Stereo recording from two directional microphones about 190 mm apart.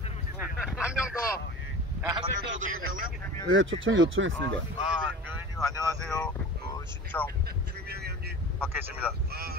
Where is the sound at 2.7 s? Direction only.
90° right.